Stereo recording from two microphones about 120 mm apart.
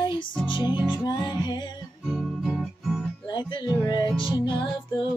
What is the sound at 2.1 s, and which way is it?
Music, centre (ahead or behind).